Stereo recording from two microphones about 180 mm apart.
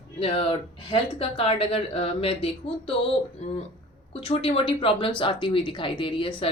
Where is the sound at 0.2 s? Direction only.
30° left (ahead or behind).